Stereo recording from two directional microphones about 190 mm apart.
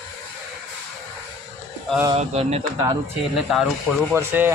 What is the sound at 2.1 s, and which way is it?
Speech, 35° right (ahead or behind).